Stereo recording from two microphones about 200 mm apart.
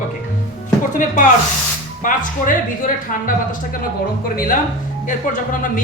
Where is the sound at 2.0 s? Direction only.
45° left (ahead or behind).